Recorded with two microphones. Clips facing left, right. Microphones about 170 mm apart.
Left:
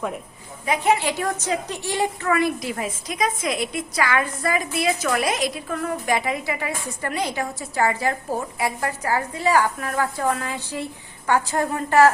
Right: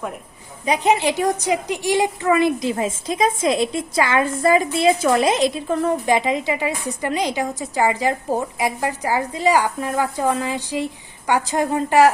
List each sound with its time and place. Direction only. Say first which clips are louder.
0.6 s a woman's voice: right 3 dB; 20° right (ahead or behind)